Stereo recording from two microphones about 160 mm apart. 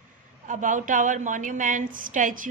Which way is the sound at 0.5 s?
55° right (ahead or behind).